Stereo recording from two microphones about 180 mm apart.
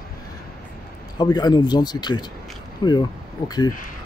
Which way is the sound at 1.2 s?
20° left (ahead or behind).